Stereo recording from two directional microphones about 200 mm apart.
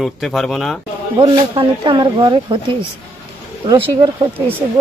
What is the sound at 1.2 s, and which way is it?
Speech, 20° right (ahead or behind).